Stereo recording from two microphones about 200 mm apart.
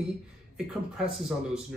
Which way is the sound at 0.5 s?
5° right (ahead or behind).